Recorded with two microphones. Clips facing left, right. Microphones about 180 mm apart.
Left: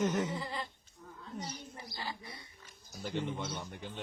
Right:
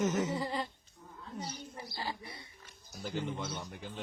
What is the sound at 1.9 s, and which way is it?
Speech, 30° right (ahead or behind).